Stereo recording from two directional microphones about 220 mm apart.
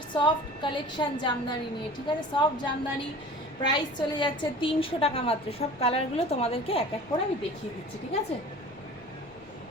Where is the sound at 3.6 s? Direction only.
20° left (ahead or behind).